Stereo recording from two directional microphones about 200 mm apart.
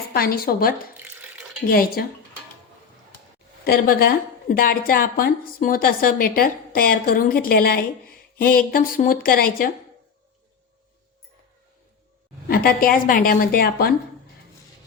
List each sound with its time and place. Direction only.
0.1 s a woman's voice: 50° left (ahead or behind)
3.6 s a woman's voice: 50° left (ahead or behind)
12.5 s a woman's voice: 45° left (ahead or behind)